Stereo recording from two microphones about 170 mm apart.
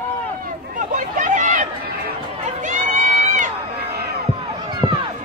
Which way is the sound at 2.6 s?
50° right (ahead or behind).